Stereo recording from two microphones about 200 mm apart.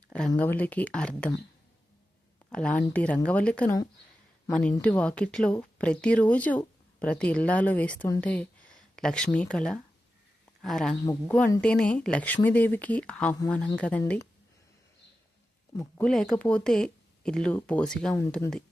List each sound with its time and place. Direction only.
0.3 s speech: 10° left (ahead or behind)
2.5 s speech: 5° left (ahead or behind)
4.8 s speech: 5° left (ahead or behind)
15.8 s speech: 5° left (ahead or behind)
18.1 s speech: 15° left (ahead or behind)